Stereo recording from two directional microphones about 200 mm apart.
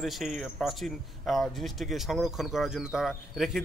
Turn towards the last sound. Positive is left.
turn(degrees=0)  # may be behind; listen again after turning